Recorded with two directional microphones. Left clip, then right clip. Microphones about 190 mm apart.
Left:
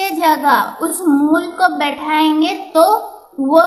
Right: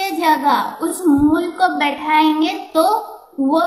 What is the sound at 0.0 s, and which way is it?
A woman's voice, 25° left (ahead or behind).